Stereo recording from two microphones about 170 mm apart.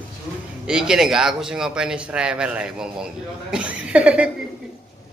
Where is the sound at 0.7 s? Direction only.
5° right (ahead or behind).